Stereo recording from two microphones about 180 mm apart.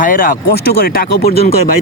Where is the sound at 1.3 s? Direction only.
45° left (ahead or behind).